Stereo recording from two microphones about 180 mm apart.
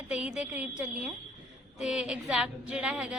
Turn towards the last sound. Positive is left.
turn(degrees=-5)  # may be behind; listen again after turning